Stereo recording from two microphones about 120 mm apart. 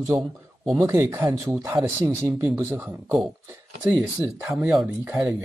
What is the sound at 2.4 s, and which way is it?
Speech, 15° right (ahead or behind).